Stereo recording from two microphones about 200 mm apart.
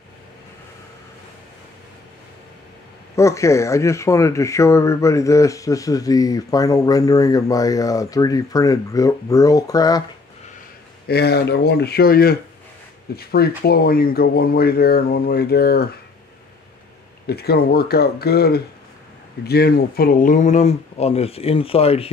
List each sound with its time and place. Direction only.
3.2 s speech: 15° left (ahead or behind)
11.1 s speech: 55° left (ahead or behind)
17.3 s speech: 50° left (ahead or behind); by 22.1 s 30° left (ahead or behind)